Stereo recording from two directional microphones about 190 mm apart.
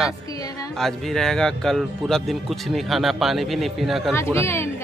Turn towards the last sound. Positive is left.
turn(degrees=15)  # may be behind; listen again after turning